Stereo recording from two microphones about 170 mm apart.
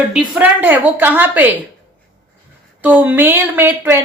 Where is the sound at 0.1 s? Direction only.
10° right (ahead or behind).